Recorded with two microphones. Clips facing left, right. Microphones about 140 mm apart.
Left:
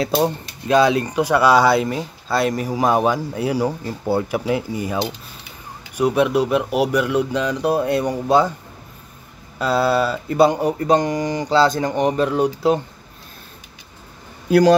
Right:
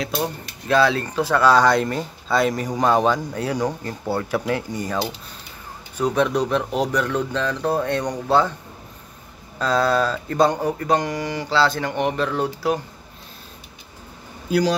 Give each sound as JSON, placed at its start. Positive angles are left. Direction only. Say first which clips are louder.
{"t": 0.0, "sound": "speech", "louder": "left 6 dB", "side_deg": 30}
{"t": 0.7, "sound": "speech", "louder": "left 3 dB", "side_deg": 15}
{"t": 5.9, "sound": "speech", "louder": "left 3 dB", "side_deg": 10}
{"t": 9.6, "sound": "speech", "louder": "left 2 dB", "side_deg": 5}
{"t": 10.8, "sound": "speech", "louder": "left 4 dB", "side_deg": 20}
{"t": 11.5, "sound": "speech", "louder": "left 4 dB", "side_deg": 40}
{"t": 12.2, "sound": "speech", "louder": "left 5 dB", "side_deg": 15}
{"t": 14.5, "sound": "speech", "louder": "left 7 dB", "side_deg": 55}